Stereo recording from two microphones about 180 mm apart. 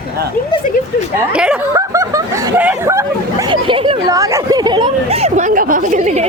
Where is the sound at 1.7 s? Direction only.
20° right (ahead or behind).